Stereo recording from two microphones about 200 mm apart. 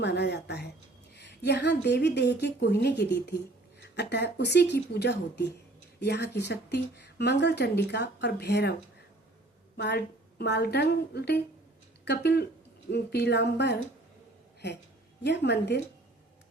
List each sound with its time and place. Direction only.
0.0 s a woman's voice: 55° left (ahead or behind)
9.7 s speech: 55° left (ahead or behind)
15.2 s speech: 60° left (ahead or behind)